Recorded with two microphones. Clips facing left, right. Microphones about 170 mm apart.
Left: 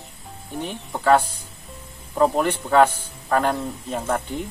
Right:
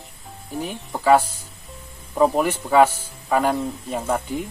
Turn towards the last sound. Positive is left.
turn(degrees=-5)  # may be behind; listen again after turning